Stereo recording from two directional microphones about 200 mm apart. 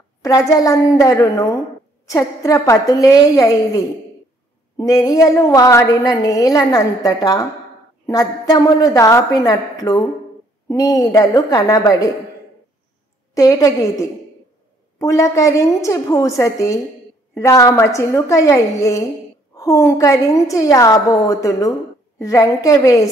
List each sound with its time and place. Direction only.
0.2 s a woman's voice: 15° left (ahead or behind)
13.3 s a woman's voice: 15° left (ahead or behind)